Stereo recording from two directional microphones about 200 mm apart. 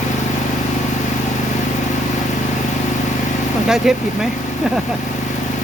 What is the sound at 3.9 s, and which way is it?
Speech, centre (ahead or behind).